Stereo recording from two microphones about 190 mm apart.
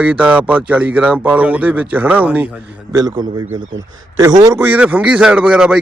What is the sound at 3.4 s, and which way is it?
Speech, 90° right.